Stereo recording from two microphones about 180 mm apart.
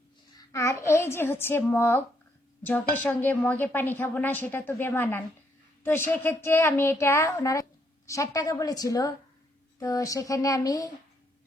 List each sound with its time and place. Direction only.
0.3 s a woman's voice: 15° left (ahead or behind)